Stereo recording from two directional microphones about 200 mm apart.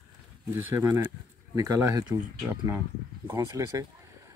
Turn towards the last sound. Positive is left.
turn(degrees=-15)  # may be behind; listen again after turning